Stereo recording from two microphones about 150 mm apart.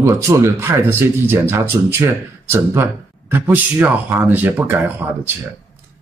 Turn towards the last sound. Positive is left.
turn(degrees=-10)  # may be behind; listen again after turning